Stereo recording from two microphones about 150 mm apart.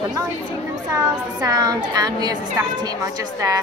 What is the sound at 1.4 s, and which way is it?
A woman's voice, 25° right (ahead or behind).